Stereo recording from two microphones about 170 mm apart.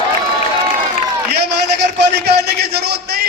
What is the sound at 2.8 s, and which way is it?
Speech, 70° right (ahead or behind).